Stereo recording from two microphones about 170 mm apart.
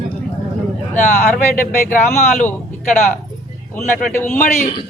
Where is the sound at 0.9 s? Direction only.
45° left (ahead or behind).